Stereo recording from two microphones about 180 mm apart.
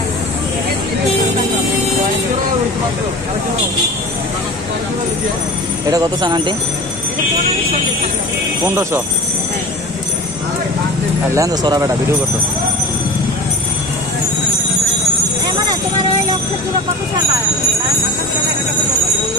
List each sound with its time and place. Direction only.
5.9 s speech: 20° right (ahead or behind)
8.6 s speech: 15° right (ahead or behind)
11.3 s speech: 20° right (ahead or behind)